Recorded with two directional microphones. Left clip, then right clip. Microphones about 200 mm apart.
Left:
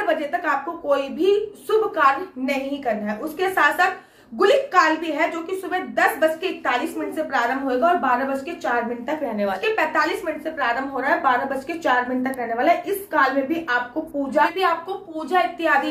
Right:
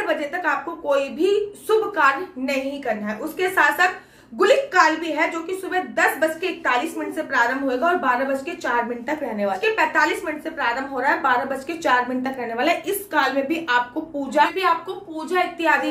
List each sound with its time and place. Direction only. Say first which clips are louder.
0.0 s a woman's voice: left 1 dB; centre (ahead or behind)
12.4 s a woman's voice: left 3 dB; 15° right (ahead or behind)